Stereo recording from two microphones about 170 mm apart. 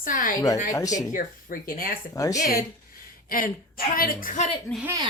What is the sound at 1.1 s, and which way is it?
Speech, 55° left (ahead or behind).